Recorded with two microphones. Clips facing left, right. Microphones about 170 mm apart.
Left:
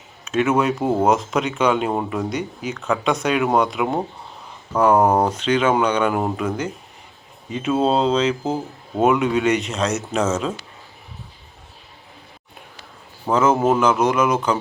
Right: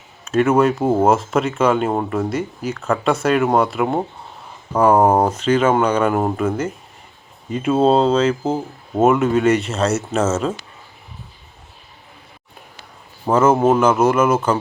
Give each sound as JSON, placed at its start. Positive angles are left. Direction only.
{"t": 0.5, "sound": "speech", "side_deg": -5}
{"t": 7.7, "sound": "speech", "side_deg": -30}
{"t": 7.9, "sound": "speech", "side_deg": -5}
{"t": 13.2, "sound": "speech", "side_deg": -10}